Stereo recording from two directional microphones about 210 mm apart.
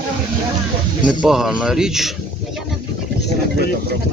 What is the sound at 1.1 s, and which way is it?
Speech, 5° right (ahead or behind).